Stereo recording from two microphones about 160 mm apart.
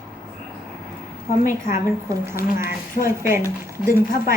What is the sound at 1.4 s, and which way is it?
Speech, 55° left (ahead or behind).